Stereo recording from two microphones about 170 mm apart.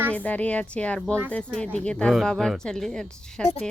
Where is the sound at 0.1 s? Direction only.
10° left (ahead or behind).